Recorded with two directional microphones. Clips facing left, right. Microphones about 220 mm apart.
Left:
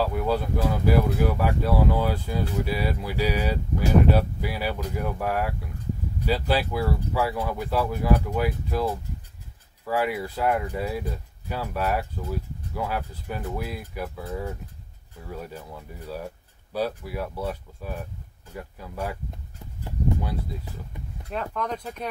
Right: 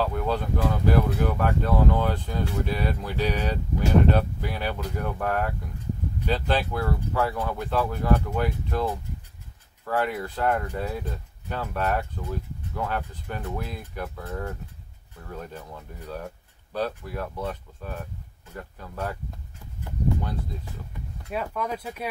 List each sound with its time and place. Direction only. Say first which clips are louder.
0.0 s speech: left 2 dB; 10° left (ahead or behind)
21.3 s speech: even; 5° right (ahead or behind)